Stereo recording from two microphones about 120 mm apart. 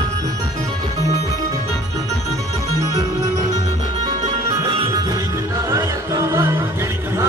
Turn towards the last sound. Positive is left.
turn(degrees=-25)  # may be behind; listen again after turning